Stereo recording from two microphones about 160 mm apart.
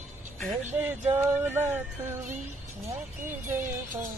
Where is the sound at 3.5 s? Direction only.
55° right (ahead or behind).